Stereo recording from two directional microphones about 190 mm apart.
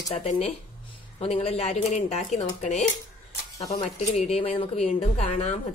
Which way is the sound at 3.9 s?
35° left (ahead or behind).